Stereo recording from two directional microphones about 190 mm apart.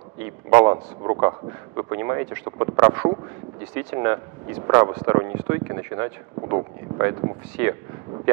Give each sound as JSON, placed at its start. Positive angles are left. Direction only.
{"t": 0.6, "sound": "speech", "side_deg": -20}